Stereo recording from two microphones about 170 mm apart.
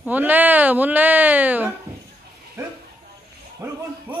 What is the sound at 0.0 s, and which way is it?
Speech, 10° right (ahead or behind).